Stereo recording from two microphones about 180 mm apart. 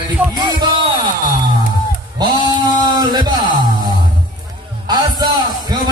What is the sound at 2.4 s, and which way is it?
Speech, 25° right (ahead or behind).